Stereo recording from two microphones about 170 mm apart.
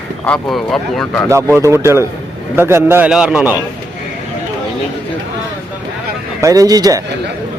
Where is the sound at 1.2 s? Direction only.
15° right (ahead or behind).